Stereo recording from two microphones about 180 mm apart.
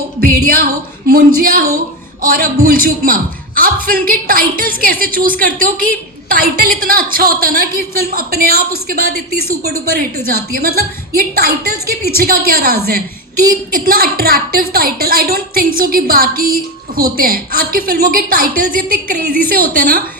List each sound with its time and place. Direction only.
0.2 s a man's voice: 50° right (ahead or behind)